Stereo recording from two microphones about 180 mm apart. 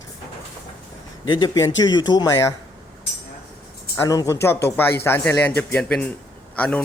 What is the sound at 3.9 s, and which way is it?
Speech, 15° left (ahead or behind).